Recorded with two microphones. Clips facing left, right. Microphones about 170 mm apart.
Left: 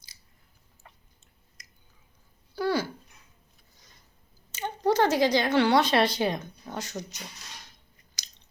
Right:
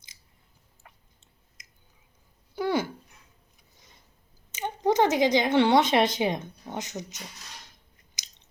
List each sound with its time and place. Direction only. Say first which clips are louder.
1.6 s chewing: left 1 dB; 25° right (ahead or behind)
2.6 s a sound: right 1 dB; 20° right (ahead or behind)
4.5 s speech: right 1 dB; 20° right (ahead or behind)
8.2 s chewing: even; 20° right (ahead or behind)